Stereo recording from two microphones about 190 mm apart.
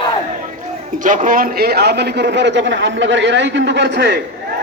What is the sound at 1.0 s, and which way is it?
A man's voice, 45° right (ahead or behind).